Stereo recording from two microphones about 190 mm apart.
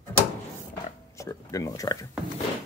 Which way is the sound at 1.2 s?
15° left (ahead or behind).